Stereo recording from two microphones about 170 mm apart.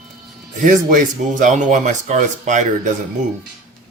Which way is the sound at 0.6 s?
50° right (ahead or behind).